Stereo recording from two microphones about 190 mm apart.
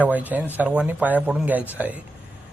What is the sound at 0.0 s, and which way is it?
Speech, 10° right (ahead or behind).